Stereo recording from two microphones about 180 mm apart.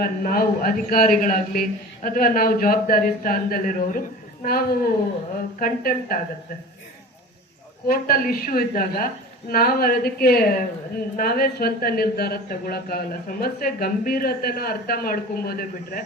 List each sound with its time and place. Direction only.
0.0 s a man's voice: 55° left (ahead or behind)
7.9 s speech: 55° left (ahead or behind)